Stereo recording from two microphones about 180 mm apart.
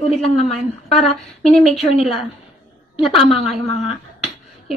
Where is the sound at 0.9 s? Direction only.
35° left (ahead or behind).